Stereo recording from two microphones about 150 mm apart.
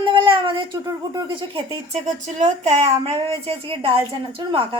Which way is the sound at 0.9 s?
25° right (ahead or behind).